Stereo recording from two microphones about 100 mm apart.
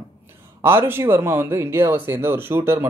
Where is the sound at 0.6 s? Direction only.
25° right (ahead or behind).